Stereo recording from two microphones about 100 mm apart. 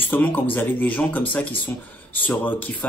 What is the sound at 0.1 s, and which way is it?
A man's voice, 20° left (ahead or behind).